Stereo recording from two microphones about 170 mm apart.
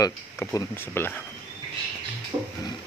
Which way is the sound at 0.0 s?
15° left (ahead or behind).